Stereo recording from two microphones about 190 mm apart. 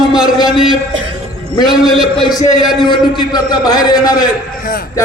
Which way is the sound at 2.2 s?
20° left (ahead or behind).